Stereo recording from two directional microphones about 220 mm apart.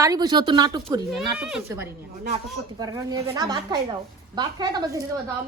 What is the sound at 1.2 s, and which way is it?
Speech, 5° right (ahead or behind).